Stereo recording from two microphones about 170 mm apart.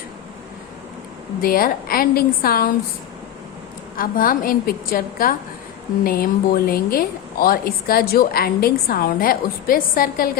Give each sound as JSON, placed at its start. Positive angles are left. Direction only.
{"t": 1.4, "sound": "a woman's voice", "side_deg": 60}
{"t": 3.9, "sound": "a woman's voice", "side_deg": 55}